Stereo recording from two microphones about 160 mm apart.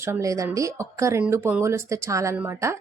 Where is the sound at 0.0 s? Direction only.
20° right (ahead or behind).